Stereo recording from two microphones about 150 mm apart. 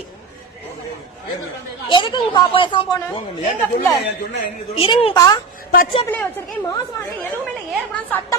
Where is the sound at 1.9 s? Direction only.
30° left (ahead or behind).